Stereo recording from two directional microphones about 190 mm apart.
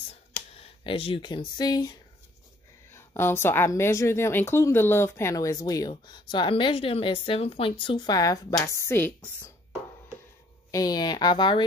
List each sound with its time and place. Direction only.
0.6 s a woman's voice: 30° left (ahead or behind); by 9.5 s 10° left (ahead or behind)
10.7 s speech: 20° left (ahead or behind)